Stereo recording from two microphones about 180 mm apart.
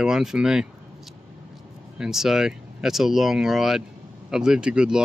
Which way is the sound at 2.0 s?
Centre (ahead or behind).